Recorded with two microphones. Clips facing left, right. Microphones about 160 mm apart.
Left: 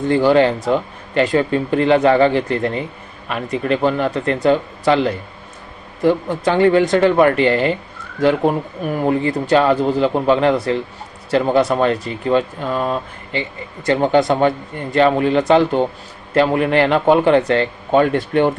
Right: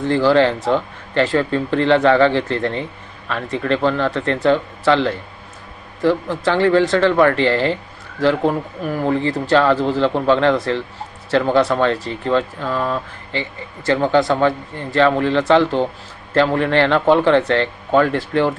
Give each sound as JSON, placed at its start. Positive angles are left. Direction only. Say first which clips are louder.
{"t": 0.1, "sound": "speech", "louder": "left 1 dB", "side_deg": 15}